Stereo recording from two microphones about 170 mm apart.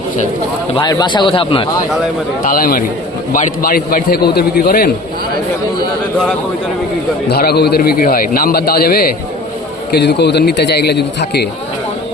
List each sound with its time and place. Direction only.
0.8 s a man's voice: 25° left (ahead or behind)
2.4 s a man's voice: 55° left (ahead or behind)
7.3 s a man's voice: 70° left (ahead or behind)
9.9 s a man's voice: 85° left